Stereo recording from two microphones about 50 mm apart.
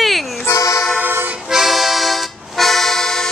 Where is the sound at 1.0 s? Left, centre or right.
Right.